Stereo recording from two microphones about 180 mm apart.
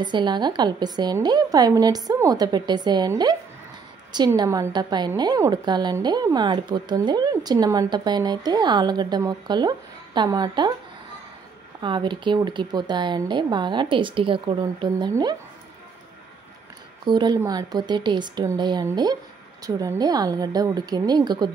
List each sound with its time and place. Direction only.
0.0 s a woman's voice: 25° right (ahead or behind)
11.8 s a woman's voice: 25° right (ahead or behind)
17.0 s a woman's voice: 25° right (ahead or behind)